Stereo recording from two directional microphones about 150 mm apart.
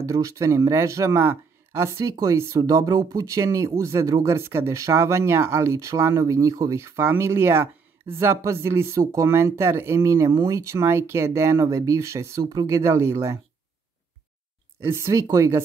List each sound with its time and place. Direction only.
0.0 s speech: 20° right (ahead or behind)
14.8 s speech: 15° right (ahead or behind)